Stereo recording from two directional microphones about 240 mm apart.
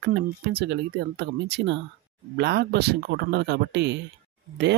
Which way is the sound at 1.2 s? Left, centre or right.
Right.